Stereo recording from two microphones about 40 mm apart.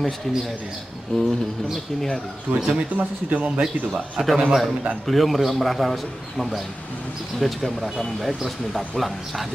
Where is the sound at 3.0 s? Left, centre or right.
Right.